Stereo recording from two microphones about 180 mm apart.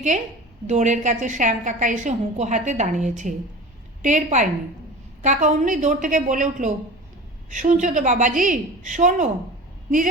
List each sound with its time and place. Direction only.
0.7 s a woman's voice: 45° right (ahead or behind)